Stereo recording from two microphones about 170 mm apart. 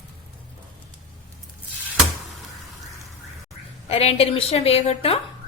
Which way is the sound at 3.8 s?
35° left (ahead or behind).